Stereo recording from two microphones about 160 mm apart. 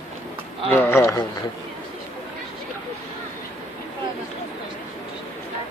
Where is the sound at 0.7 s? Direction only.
15° left (ahead or behind).